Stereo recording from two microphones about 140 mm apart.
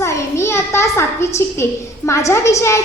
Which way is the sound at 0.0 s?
20° left (ahead or behind).